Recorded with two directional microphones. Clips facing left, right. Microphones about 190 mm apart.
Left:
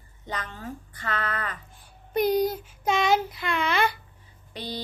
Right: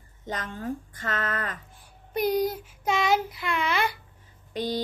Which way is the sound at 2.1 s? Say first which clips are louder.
Left 2 dB; 10° right (ahead or behind).